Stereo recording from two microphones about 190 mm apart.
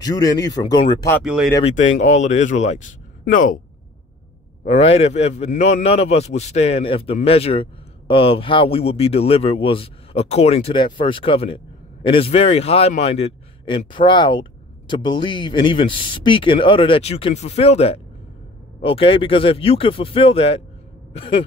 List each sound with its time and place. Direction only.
0.0 s speech: 20° left (ahead or behind)
1.2 s speech: 5° right (ahead or behind)
1.6 s a man's voice: 35° left (ahead or behind)
4.6 s a man's voice: 35° left (ahead or behind)